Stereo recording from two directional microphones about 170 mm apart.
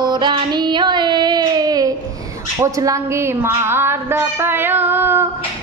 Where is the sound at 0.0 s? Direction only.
25° right (ahead or behind).